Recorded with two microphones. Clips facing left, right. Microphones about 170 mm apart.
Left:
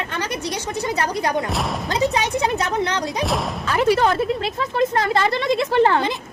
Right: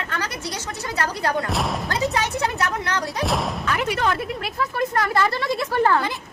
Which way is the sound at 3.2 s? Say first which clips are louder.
Left 1 dB; centre (ahead or behind).